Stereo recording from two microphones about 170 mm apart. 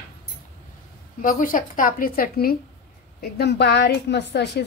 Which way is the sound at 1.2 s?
55° left (ahead or behind).